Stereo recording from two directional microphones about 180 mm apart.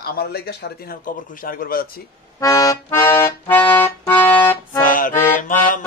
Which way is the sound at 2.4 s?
20° left (ahead or behind).